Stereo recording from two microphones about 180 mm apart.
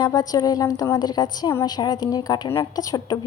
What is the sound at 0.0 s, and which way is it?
Speech, 20° left (ahead or behind).